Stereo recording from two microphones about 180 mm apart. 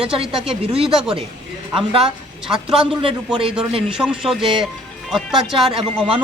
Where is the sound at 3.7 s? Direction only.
30° right (ahead or behind).